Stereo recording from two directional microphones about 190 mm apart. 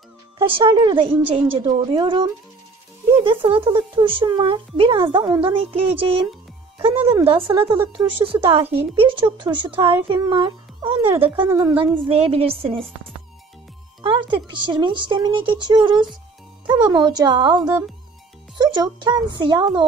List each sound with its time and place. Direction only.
0.4 s speech: 25° right (ahead or behind)
11.6 s a woman's voice: 10° right (ahead or behind)
12.0 s a woman's voice: 30° right (ahead or behind)
14.3 s speech: 25° right (ahead or behind)